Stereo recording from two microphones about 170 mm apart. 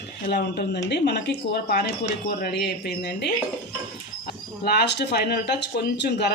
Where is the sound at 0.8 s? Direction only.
80° left.